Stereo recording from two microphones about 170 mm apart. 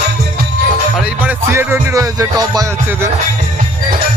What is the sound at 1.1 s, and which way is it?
Music, 10° right (ahead or behind).